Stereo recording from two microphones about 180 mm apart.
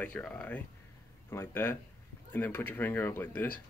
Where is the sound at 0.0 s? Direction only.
5° left (ahead or behind).